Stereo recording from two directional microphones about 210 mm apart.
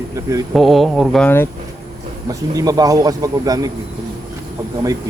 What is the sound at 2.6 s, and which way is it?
Speech, 15° right (ahead or behind).